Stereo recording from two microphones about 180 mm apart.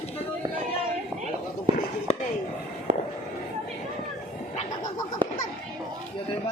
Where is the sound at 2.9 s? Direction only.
40° right (ahead or behind).